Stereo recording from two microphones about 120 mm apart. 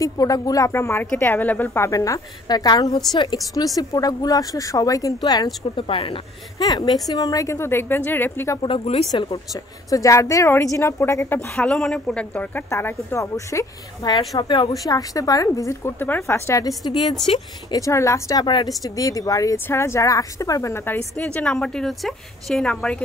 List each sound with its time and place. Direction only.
0.0 s a woman's voice: 30° left (ahead or behind)
5.9 s speech: 50° left (ahead or behind)
6.6 s speech: 35° left (ahead or behind); by 8.5 s 15° left (ahead or behind)
8.6 s speech: 55° left (ahead or behind)
9.1 s speech: 30° left (ahead or behind)
11.5 s a woman's voice: 10° left (ahead or behind)
12.6 s speech: 25° left (ahead or behind)
14.3 s a woman's voice: 40° left (ahead or behind)
14.7 s speech: 30° left (ahead or behind)
18.4 s a woman's voice: 40° left (ahead or behind)
18.8 s a woman's voice: 30° left (ahead or behind); by 23.0 s 5° left (ahead or behind)